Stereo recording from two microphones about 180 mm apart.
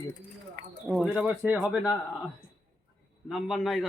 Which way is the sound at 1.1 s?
10° right (ahead or behind).